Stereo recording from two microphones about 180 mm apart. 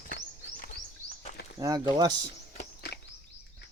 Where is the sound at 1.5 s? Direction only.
20° right (ahead or behind).